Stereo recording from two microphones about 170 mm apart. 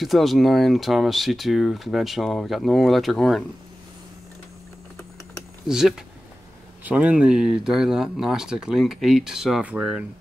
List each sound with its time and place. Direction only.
0.0 s speech: centre (ahead or behind)
5.7 s speech: 5° right (ahead or behind)